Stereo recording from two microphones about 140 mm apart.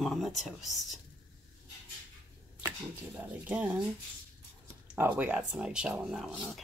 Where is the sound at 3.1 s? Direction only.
10° right (ahead or behind).